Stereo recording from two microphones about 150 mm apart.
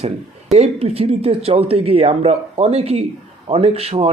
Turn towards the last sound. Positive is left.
turn(degrees=-40)  # may be behind; listen again after turning